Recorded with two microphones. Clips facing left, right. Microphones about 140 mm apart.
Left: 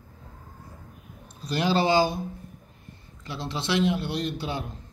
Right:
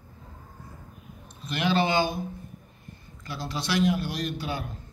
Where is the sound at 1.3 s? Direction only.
35° left (ahead or behind).